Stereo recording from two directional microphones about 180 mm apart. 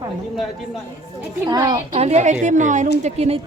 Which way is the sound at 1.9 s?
35° right (ahead or behind).